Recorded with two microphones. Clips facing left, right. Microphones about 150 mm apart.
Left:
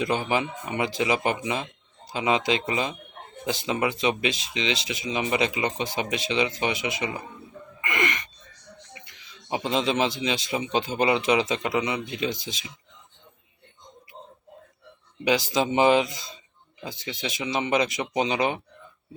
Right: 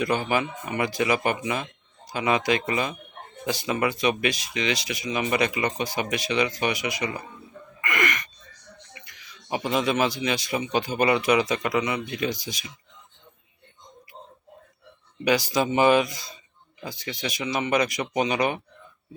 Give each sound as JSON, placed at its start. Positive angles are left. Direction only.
{"t": 0.0, "sound": "speech", "side_deg": 20}
{"t": 7.8, "sound": "gasp", "side_deg": 25}
{"t": 9.0, "sound": "speech", "side_deg": 25}
{"t": 15.4, "sound": "speech", "side_deg": 20}